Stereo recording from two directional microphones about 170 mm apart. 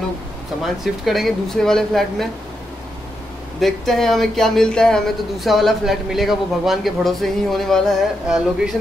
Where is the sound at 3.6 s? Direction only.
Centre (ahead or behind).